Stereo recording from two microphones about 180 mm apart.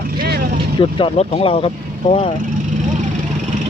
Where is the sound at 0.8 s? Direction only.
30° left (ahead or behind).